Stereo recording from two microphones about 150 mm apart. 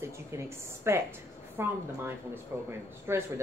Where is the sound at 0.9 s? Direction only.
15° right (ahead or behind).